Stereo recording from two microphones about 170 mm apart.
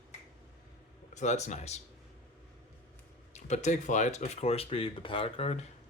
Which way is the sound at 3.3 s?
45° left (ahead or behind).